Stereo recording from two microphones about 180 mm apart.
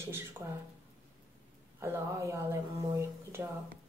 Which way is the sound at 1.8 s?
15° right (ahead or behind).